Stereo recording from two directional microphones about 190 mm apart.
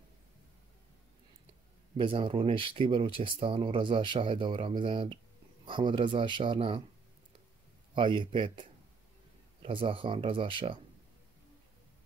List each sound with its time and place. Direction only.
2.0 s speech: 30° right (ahead or behind)
7.9 s speech: 25° right (ahead or behind)